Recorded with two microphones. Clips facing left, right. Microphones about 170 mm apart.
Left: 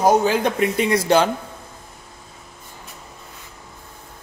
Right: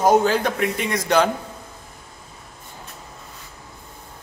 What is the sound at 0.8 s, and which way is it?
Speech, 30° left (ahead or behind).